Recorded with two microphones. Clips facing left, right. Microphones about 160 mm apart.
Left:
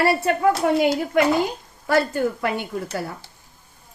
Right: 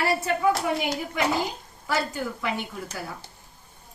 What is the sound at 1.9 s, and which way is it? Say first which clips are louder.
Speech: left 8 dB; 60° left (ahead or behind).